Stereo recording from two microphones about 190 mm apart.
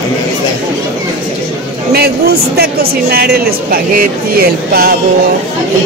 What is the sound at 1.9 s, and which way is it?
Speech, 55° right (ahead or behind).